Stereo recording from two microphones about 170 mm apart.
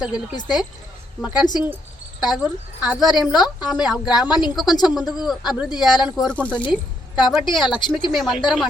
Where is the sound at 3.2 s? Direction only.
Centre (ahead or behind).